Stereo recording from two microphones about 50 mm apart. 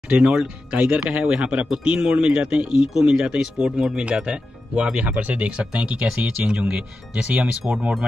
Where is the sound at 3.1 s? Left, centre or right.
Right.